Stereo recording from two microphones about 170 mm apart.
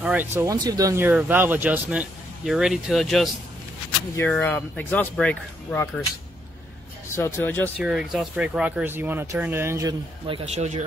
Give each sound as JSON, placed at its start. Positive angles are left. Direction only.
{"t": 0.0, "sound": "speech", "side_deg": -10}
{"t": 4.3, "sound": "speech", "side_deg": 10}
{"t": 7.2, "sound": "speech", "side_deg": 15}
{"t": 7.7, "sound": "speech", "side_deg": -5}
{"t": 10.2, "sound": "speech", "side_deg": -35}